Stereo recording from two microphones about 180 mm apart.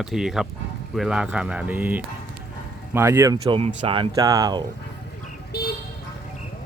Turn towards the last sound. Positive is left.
turn(degrees=60)  # may be behind; listen again after turning